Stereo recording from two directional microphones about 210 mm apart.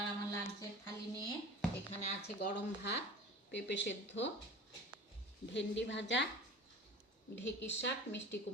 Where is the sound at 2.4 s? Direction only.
50° left (ahead or behind).